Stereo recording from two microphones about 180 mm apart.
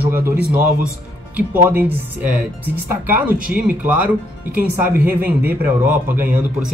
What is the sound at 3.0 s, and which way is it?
Speech, 10° right (ahead or behind).